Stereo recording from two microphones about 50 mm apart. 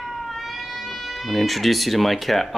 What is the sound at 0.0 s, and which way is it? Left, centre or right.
Speech, centre.